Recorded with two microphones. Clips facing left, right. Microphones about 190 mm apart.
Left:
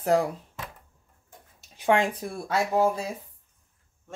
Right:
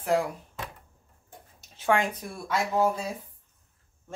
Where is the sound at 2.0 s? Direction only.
30° left (ahead or behind).